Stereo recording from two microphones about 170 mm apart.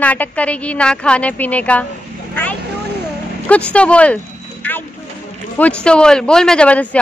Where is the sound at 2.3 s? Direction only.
10° left (ahead or behind).